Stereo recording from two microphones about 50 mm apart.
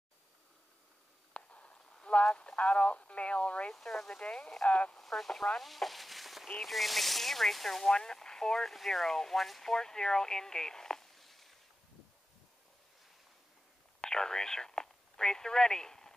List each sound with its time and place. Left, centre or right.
1.3 s radio: left
3.7 s speech: centre; by 4.9 s left
4.9 s speech: centre
5.7 s fowl: centre
6.6 s speech: centre
14.0 s telephone: centre